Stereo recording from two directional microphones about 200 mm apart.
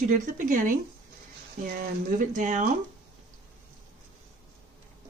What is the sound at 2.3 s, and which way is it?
Speech, 40° right (ahead or behind).